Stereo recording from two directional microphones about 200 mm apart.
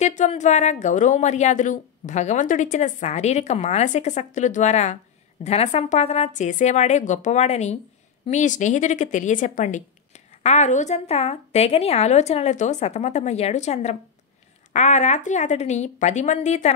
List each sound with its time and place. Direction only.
0.0 s speech: 35° left (ahead or behind)